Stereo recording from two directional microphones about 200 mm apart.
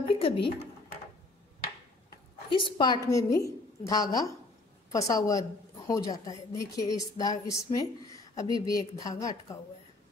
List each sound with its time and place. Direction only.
0.0 s speech: 25° left (ahead or behind)
2.5 s a woman's voice: 20° left (ahead or behind)